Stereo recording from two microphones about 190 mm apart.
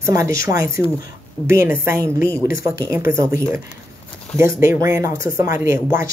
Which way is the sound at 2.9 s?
15° right (ahead or behind).